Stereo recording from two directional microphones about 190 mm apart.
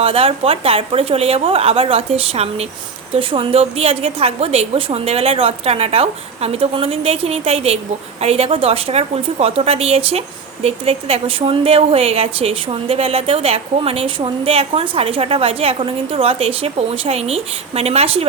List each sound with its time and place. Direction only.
0.0 s a woman's voice: 30° right (ahead or behind)